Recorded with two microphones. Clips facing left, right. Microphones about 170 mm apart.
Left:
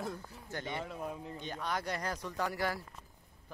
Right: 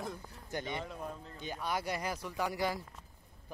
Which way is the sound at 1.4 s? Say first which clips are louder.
Right 2 dB; 10° right (ahead or behind).